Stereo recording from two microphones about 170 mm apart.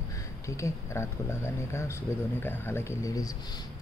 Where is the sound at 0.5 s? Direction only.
15° left (ahead or behind).